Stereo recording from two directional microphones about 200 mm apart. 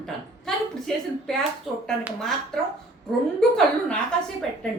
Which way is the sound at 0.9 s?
Centre (ahead or behind).